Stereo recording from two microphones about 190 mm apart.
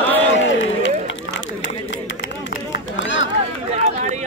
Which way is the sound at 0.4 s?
75° left (ahead or behind).